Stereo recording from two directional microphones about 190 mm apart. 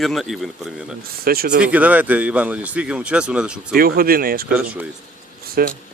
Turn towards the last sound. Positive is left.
turn(degrees=-50)  # may be behind; listen again after turning